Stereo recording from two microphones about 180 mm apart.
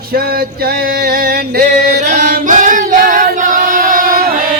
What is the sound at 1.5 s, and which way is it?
Singing, 55° right (ahead or behind).